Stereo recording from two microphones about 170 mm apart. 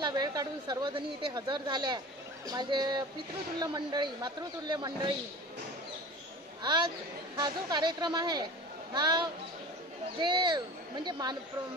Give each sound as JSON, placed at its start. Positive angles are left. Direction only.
{"t": 0.0, "sound": "a woman's voice", "side_deg": -25}
{"t": 6.6, "sound": "a woman's voice", "side_deg": -25}